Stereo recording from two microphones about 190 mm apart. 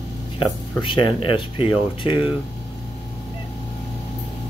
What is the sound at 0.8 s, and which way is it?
Speech, 25° left (ahead or behind).